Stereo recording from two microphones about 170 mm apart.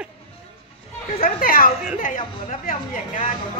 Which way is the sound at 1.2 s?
60° left (ahead or behind).